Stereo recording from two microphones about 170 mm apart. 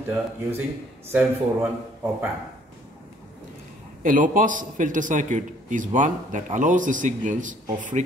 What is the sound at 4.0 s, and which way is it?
Speech, 50° right (ahead or behind).